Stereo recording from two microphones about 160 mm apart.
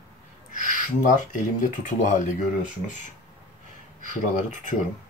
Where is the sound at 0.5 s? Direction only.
55° left (ahead or behind).